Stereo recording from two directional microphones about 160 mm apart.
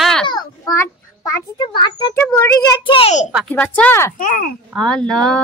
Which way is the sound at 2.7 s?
35° left (ahead or behind).